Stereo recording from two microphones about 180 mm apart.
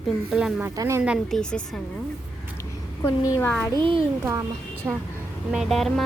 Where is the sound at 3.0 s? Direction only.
20° left (ahead or behind).